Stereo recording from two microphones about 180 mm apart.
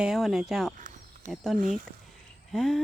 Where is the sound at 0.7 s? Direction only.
45° right (ahead or behind).